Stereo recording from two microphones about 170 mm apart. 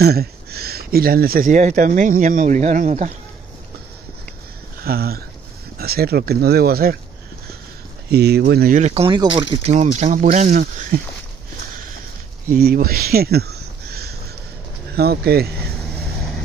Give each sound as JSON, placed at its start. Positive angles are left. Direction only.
{"t": 0.0, "sound": "speech", "side_deg": -65}
{"t": 4.8, "sound": "speech", "side_deg": -65}
{"t": 8.1, "sound": "speech", "side_deg": -70}
{"t": 8.7, "sound": "speech", "side_deg": -40}
{"t": 12.4, "sound": "speech", "side_deg": -65}